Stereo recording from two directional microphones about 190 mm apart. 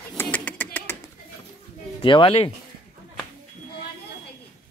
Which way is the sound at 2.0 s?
25° left (ahead or behind).